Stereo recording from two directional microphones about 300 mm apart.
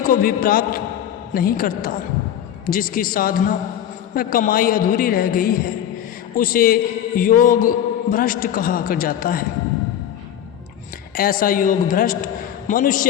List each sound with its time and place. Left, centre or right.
0.0 s a man's voice: left
11.2 s a man's voice: left